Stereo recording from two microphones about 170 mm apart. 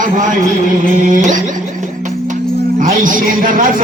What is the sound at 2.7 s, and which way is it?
A man's voice, 50° right (ahead or behind).